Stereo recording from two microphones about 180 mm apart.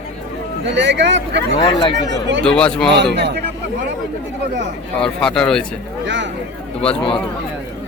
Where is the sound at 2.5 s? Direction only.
5° left (ahead or behind).